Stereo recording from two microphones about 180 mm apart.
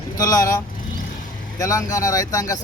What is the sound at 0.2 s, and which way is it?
Speech, 20° left (ahead or behind).